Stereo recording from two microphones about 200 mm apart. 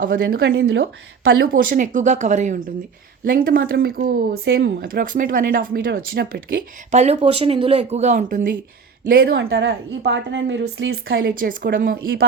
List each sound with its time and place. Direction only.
0.0 s speech: 50° right (ahead or behind)
0.6 s speech: 60° right (ahead or behind)
6.9 s speech: 35° right (ahead or behind)
9.3 s a woman's voice: 65° right (ahead or behind)
11.3 s speech: 45° right (ahead or behind)